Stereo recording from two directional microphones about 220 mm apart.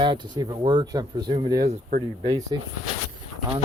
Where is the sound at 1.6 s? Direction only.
30° right (ahead or behind).